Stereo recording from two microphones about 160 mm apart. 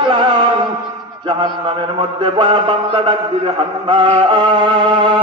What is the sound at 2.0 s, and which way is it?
A man's voice, 30° right (ahead or behind).